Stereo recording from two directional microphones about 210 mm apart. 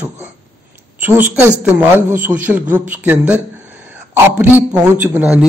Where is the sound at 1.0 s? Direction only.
10° right (ahead or behind).